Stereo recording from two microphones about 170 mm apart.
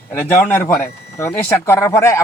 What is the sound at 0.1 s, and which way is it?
A man's voice, 15° left (ahead or behind).